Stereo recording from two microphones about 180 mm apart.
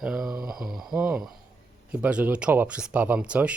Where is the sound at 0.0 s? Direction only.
Centre (ahead or behind).